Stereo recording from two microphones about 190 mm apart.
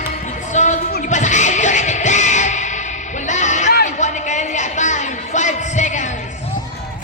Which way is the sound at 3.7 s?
40° left (ahead or behind).